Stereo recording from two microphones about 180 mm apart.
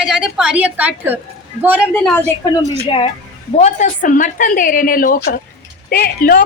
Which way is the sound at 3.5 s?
40° left (ahead or behind).